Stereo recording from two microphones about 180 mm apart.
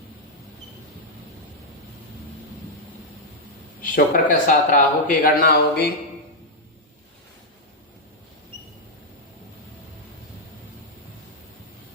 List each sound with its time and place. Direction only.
3.8 s a man's voice: 50° left (ahead or behind)